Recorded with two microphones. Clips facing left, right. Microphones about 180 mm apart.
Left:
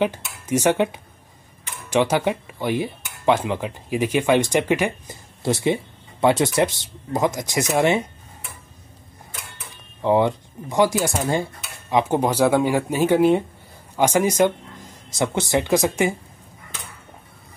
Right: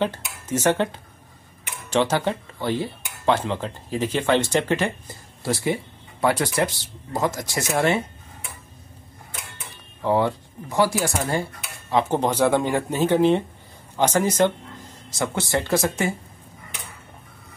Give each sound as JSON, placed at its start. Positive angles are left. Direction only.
{"t": 0.0, "sound": "speech", "side_deg": 15}
{"t": 10.0, "sound": "speech", "side_deg": 15}